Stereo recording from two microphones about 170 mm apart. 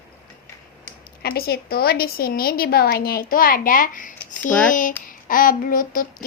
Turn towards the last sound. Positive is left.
turn(degrees=55)  # may be behind; listen again after turning